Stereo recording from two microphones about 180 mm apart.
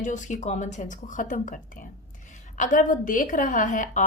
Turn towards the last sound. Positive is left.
turn(degrees=45)  # may be behind; listen again after turning